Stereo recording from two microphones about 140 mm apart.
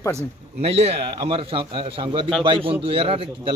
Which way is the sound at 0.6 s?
45° right (ahead or behind).